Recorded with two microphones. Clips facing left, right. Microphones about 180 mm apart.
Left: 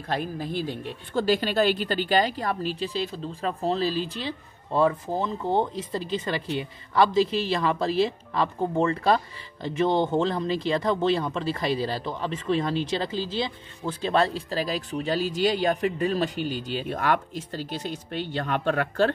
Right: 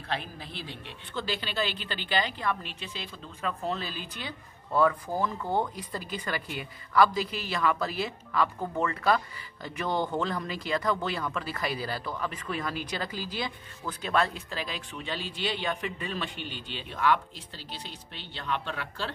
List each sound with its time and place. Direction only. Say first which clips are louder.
0.1 s a woman's voice: left 8 dB; 45° left (ahead or behind)